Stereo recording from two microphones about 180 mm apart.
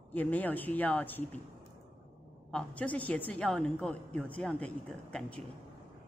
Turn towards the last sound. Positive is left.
turn(degrees=5)  # may be behind; listen again after turning